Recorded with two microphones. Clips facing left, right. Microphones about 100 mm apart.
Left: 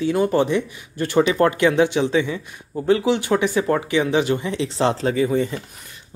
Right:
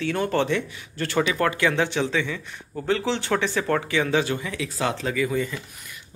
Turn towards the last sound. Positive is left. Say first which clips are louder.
# left 5 dB
turn(degrees=35)  # may be behind; listen again after turning